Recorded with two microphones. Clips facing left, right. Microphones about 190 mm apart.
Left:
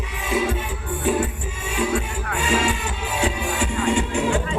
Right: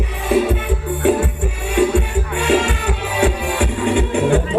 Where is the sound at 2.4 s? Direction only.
65° right (ahead or behind).